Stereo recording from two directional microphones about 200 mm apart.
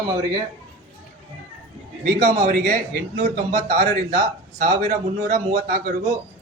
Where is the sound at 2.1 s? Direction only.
45° right (ahead or behind).